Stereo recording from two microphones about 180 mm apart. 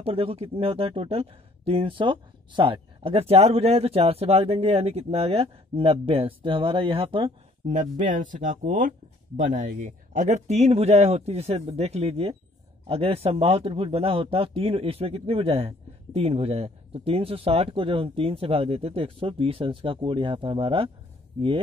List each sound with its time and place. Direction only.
0.0 s speech: 30° right (ahead or behind)